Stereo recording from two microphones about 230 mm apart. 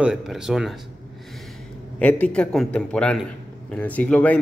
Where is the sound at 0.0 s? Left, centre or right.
Centre.